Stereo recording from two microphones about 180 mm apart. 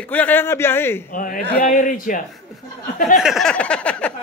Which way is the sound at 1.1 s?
50° left (ahead or behind).